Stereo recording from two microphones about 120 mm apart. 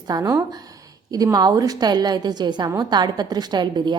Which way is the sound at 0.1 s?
30° right (ahead or behind).